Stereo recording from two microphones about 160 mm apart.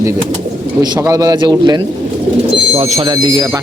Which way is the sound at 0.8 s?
20° right (ahead or behind).